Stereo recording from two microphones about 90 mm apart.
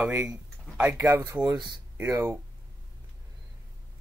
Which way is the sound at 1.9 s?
30° right (ahead or behind).